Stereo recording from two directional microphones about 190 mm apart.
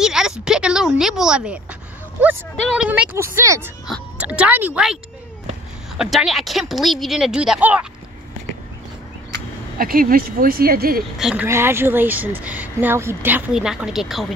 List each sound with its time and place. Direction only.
0.0 s a sound: 5° right (ahead or behind)
2.8 s speech: 5° right (ahead or behind)
3.8 s speech: 5° right (ahead or behind)
5.9 s speech: centre (ahead or behind)
9.8 s speech: 50° right (ahead or behind)
11.1 s speech: 5° right (ahead or behind)
11.4 s speech: 15° right (ahead or behind)